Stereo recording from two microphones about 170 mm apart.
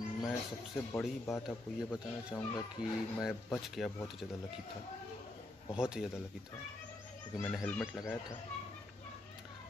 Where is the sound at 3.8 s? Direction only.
Centre (ahead or behind).